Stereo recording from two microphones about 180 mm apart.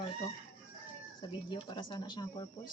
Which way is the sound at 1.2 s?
25° left (ahead or behind).